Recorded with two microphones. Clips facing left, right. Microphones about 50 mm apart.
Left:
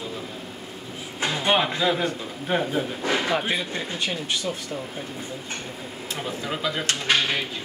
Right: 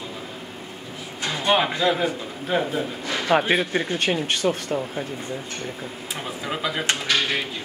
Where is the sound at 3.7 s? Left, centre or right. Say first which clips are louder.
Right 6 dB; right.